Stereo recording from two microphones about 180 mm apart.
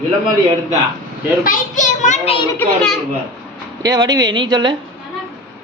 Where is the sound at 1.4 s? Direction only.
45° left (ahead or behind).